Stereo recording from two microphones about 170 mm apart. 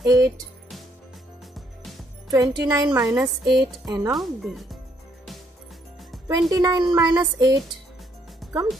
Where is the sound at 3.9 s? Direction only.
20° right (ahead or behind).